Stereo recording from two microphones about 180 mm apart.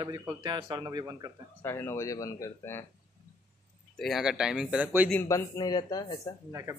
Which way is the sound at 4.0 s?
Centre (ahead or behind).